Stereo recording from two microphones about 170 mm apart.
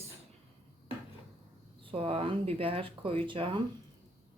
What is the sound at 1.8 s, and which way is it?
Speech, 35° right (ahead or behind).